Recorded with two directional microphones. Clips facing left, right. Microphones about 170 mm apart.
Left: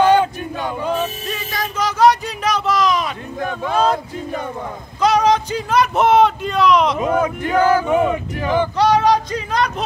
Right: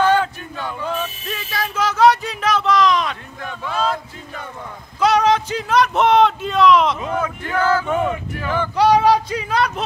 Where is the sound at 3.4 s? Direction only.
45° left (ahead or behind).